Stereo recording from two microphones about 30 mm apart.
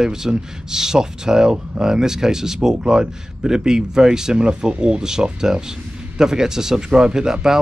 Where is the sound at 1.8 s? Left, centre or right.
Centre.